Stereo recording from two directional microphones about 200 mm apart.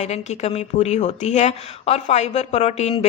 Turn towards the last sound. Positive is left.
turn(degrees=35)  # may be behind; listen again after turning